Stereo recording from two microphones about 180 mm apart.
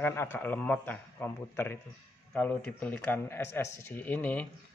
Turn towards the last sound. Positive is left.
turn(degrees=10)  # may be behind; listen again after turning